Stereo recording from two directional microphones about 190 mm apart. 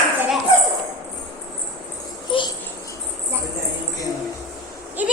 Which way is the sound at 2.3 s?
25° left (ahead or behind).